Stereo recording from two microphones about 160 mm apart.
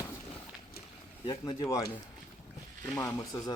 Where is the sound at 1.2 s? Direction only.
25° left (ahead or behind).